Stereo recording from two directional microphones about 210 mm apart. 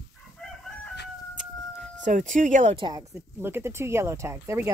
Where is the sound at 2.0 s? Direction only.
35° right (ahead or behind).